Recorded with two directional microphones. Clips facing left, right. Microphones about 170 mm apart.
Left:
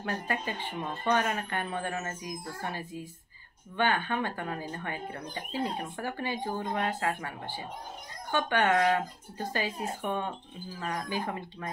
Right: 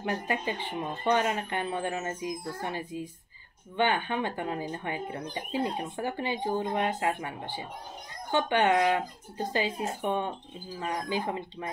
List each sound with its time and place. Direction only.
0.0 s speech: 15° right (ahead or behind)